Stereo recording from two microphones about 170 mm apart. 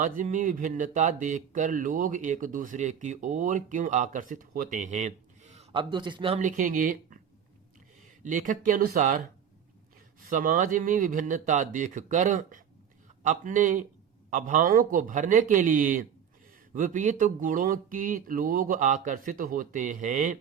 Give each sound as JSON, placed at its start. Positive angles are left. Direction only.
{"t": 0.0, "sound": "speech", "side_deg": -50}
{"t": 5.9, "sound": "speech", "side_deg": -25}
{"t": 6.4, "sound": "speech", "side_deg": -50}
{"t": 8.2, "sound": "speech", "side_deg": -50}
{"t": 10.2, "sound": "speech", "side_deg": -50}